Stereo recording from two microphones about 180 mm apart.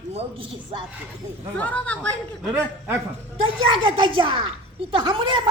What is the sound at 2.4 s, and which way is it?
Speech, 10° right (ahead or behind).